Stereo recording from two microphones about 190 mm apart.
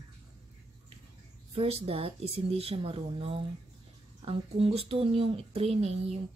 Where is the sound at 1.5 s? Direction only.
30° right (ahead or behind).